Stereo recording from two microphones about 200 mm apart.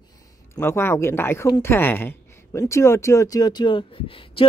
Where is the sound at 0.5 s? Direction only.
10° left (ahead or behind).